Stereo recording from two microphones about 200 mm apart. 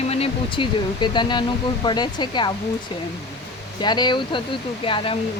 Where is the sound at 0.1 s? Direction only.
25° left (ahead or behind).